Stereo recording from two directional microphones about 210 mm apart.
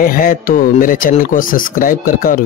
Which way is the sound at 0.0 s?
45° left (ahead or behind).